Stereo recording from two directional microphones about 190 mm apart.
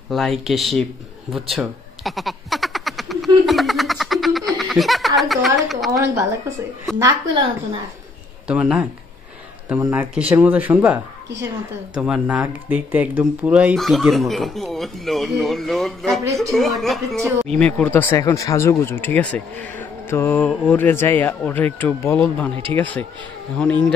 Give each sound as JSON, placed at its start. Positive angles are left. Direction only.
{"t": 0.1, "sound": "speech", "side_deg": 0}
{"t": 5.9, "sound": "a woman's voice", "side_deg": -15}
{"t": 8.5, "sound": "speech", "side_deg": -5}